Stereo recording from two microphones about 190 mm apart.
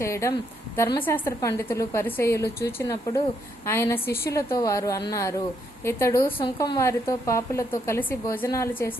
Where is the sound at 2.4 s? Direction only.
55° left (ahead or behind).